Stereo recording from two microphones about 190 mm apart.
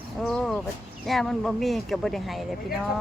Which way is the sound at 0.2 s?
5° left (ahead or behind).